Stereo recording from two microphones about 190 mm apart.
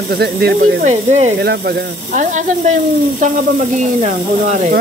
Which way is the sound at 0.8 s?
35° right (ahead or behind).